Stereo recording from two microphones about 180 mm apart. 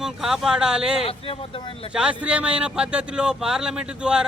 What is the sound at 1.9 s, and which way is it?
Speech, 5° right (ahead or behind).